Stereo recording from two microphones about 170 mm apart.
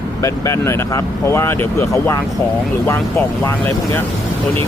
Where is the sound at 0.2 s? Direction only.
20° left (ahead or behind).